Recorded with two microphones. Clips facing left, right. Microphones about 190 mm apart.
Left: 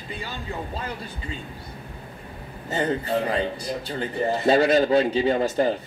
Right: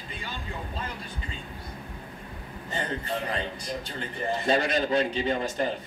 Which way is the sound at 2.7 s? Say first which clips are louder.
Left 8 dB; 40° left (ahead or behind).